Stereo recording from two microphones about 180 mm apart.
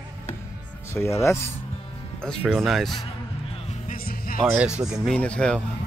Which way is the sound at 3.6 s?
50° left (ahead or behind).